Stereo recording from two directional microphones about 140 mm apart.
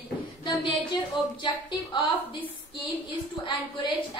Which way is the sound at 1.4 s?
35° left (ahead or behind).